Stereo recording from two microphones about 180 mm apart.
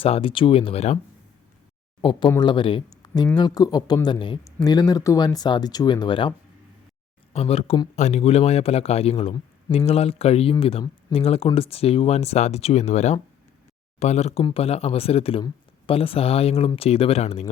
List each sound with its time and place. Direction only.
0.0 s speech: 30° left (ahead or behind)
2.0 s speech: 25° left (ahead or behind)
7.3 s speech: 35° left (ahead or behind)